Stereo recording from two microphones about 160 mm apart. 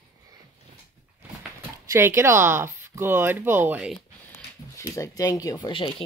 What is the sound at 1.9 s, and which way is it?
Speech, 15° right (ahead or behind).